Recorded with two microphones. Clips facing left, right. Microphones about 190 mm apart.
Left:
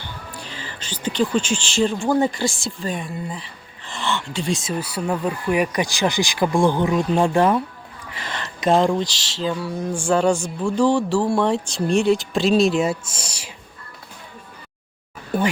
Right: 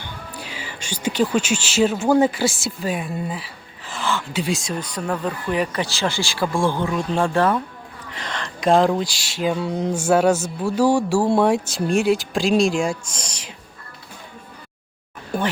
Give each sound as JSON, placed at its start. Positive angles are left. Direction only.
{"t": 0.0, "sound": "music", "side_deg": -10}
{"t": 1.0, "sound": "speech", "side_deg": -5}
{"t": 9.6, "sound": "a sound", "side_deg": -20}
{"t": 9.9, "sound": "music", "side_deg": -5}
{"t": 11.3, "sound": "speech", "side_deg": -10}